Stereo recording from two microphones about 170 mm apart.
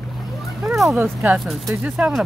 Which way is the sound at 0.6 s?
Centre (ahead or behind).